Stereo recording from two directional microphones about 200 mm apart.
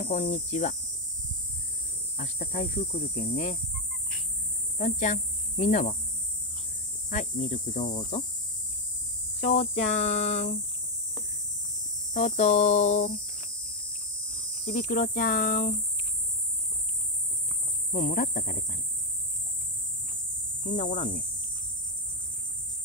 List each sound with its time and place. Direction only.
0.0 s cricket: 45° left (ahead or behind)
0.3 s speech: 35° left (ahead or behind)
2.1 s speech: 35° left (ahead or behind)
4.7 s speech: 35° left (ahead or behind)
7.1 s speech: 40° left (ahead or behind)
9.4 s speech: 35° left (ahead or behind)
12.1 s speech: 35° left (ahead or behind)
14.6 s speech: 45° left (ahead or behind)
17.9 s speech: 35° left (ahead or behind)
20.6 s speech: 40° left (ahead or behind)